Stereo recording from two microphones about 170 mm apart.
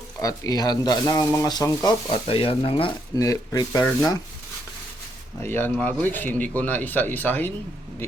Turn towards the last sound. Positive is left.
turn(degrees=10)  # may be behind; listen again after turning